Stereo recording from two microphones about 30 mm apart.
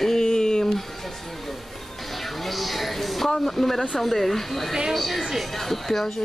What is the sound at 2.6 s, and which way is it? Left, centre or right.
Speech, centre.